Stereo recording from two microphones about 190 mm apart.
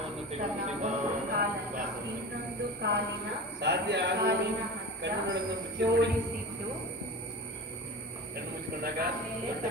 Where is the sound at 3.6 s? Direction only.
65° right (ahead or behind).